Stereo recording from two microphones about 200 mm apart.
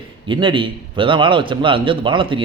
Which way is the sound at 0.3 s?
25° right (ahead or behind).